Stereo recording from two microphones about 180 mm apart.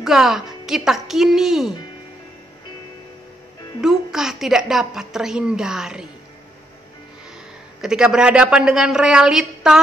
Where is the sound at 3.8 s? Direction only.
5° right (ahead or behind).